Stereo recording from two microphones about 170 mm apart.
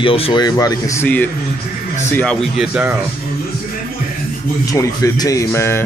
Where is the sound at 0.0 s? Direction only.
30° left (ahead or behind); by 2.3 s 10° left (ahead or behind).